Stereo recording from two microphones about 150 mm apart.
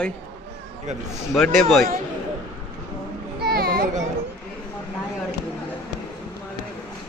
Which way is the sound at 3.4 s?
90° right.